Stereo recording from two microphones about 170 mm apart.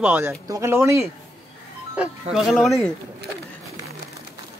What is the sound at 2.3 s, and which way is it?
Speech, centre (ahead or behind).